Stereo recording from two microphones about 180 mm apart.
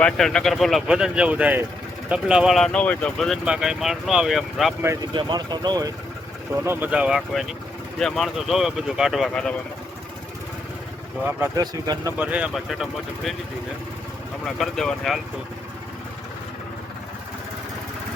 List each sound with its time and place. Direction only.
0.0 s speech: 5° left (ahead or behind)
5.1 s speech: 25° right (ahead or behind)
6.7 s speech: 10° right (ahead or behind)
11.3 s speech: 20° right (ahead or behind)
12.1 s speech: 10° right (ahead or behind)
14.4 s speech: centre (ahead or behind)